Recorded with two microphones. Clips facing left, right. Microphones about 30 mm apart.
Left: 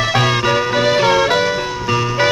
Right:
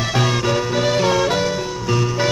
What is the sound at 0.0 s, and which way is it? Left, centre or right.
Music, left.